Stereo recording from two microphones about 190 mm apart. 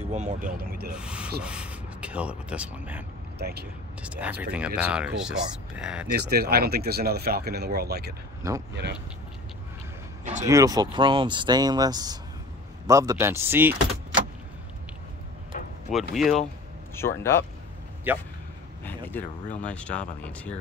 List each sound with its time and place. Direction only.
0.1 s speech: 40° right (ahead or behind)
0.9 s speech: 5° right (ahead or behind)
3.3 s speech: 55° right (ahead or behind)
4.0 s speech: 5° right (ahead or behind)
6.1 s speech: 55° right (ahead or behind)
8.4 s speech: 20° right (ahead or behind)
10.4 s speech: 20° right (ahead or behind)
15.9 s speech: centre (ahead or behind)
16.9 s speech: 15° left (ahead or behind)
18.1 s speech: 10° right (ahead or behind)
19.0 s speech: 10° left (ahead or behind)